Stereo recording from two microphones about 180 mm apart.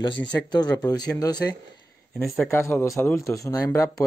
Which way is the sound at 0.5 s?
20° left (ahead or behind).